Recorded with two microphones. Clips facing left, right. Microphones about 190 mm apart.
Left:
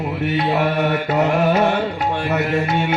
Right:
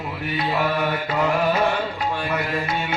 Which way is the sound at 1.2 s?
25° left (ahead or behind).